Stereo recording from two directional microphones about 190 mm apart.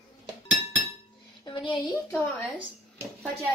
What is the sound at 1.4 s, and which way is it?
A woman's voice, 25° left (ahead or behind).